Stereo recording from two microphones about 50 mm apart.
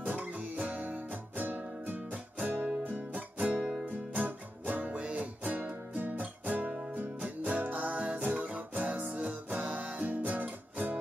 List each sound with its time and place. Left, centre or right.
0.0 s music: right